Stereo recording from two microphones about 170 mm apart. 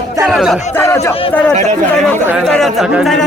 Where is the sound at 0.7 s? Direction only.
15° left (ahead or behind).